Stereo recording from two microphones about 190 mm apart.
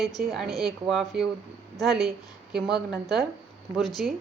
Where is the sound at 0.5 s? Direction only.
Centre (ahead or behind).